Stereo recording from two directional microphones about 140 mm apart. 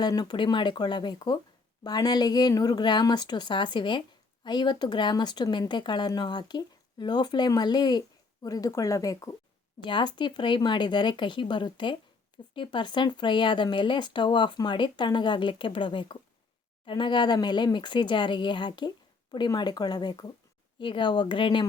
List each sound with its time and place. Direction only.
0.0 s speech: 30° left (ahead or behind)